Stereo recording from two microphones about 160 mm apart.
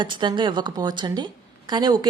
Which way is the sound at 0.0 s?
30° right (ahead or behind).